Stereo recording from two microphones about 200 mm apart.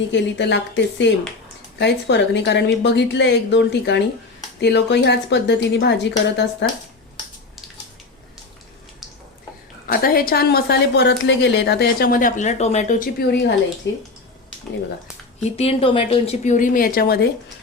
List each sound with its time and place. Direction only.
0.1 s a woman's voice: 60° left (ahead or behind)
9.8 s a woman's voice: 45° left (ahead or behind)
15.4 s speech: 30° left (ahead or behind); by 17.2 s 45° left (ahead or behind)